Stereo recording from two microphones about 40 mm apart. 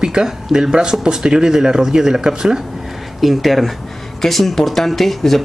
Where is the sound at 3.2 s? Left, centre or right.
Centre.